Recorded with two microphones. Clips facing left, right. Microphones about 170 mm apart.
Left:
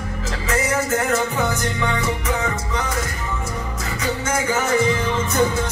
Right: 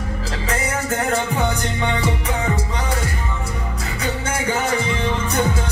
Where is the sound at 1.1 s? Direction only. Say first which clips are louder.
Even; 30° right (ahead or behind).